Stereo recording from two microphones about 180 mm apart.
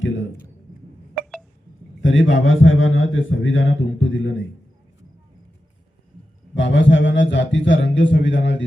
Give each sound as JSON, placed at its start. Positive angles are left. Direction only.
{"t": 0.0, "sound": "a sound", "side_deg": 90}
{"t": 2.0, "sound": "a man's voice", "side_deg": 90}
{"t": 6.6, "sound": "a man's voice", "side_deg": 90}